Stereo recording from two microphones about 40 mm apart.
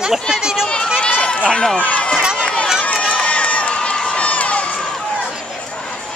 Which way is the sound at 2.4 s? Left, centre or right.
Left.